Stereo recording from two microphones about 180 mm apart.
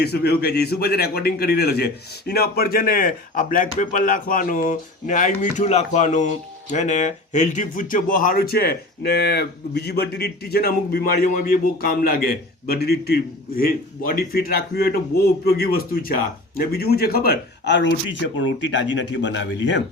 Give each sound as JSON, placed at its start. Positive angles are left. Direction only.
{"t": 0.0, "sound": "a man's voice", "side_deg": 65}